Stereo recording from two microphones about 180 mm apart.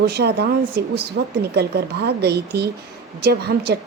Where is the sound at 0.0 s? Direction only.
65° right (ahead or behind).